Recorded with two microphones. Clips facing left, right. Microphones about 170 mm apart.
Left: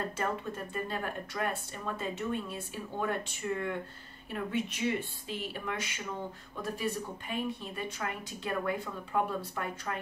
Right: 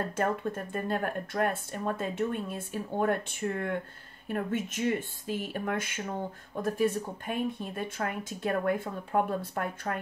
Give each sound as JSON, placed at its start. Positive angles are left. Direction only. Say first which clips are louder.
{"t": 0.1, "sound": "speech", "louder": "right 5 dB", "side_deg": -50}